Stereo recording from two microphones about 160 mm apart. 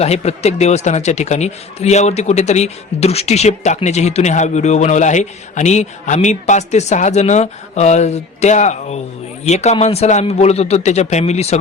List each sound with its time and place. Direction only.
0.0 s speech: 40° left (ahead or behind)